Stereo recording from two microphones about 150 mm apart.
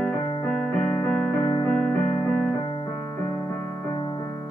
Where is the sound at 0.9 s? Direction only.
10° left (ahead or behind).